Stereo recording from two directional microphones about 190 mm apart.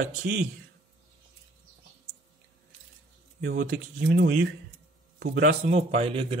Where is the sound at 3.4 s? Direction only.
50° right (ahead or behind).